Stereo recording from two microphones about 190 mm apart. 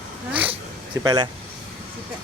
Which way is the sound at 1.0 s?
20° right (ahead or behind).